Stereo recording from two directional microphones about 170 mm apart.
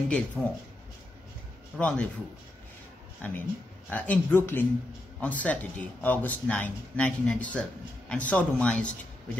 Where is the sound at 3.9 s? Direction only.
10° left (ahead or behind).